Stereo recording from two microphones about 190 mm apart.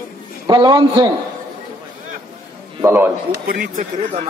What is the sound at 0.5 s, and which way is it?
Speech, 20° right (ahead or behind).